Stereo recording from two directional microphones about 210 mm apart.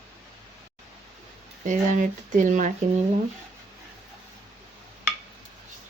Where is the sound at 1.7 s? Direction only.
35° right (ahead or behind).